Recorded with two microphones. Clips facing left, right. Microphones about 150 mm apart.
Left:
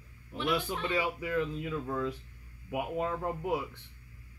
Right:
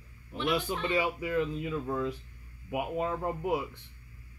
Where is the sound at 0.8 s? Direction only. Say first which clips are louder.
Right 3 dB; 15° right (ahead or behind).